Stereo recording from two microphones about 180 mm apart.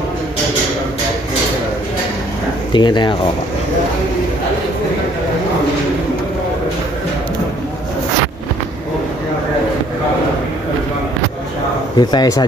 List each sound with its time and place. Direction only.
2.7 s speech: 25° left (ahead or behind)
12.0 s speech: 25° left (ahead or behind)